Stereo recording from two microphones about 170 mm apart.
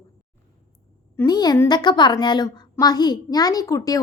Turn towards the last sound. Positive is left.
turn(degrees=20)  # may be behind; listen again after turning